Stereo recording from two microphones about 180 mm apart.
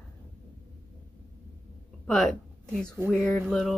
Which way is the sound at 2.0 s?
5° left (ahead or behind).